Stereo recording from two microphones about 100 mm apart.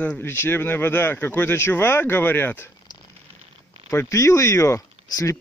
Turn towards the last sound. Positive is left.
turn(degrees=35)  # may be behind; listen again after turning